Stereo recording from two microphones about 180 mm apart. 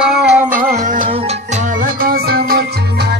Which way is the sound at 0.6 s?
50° right (ahead or behind).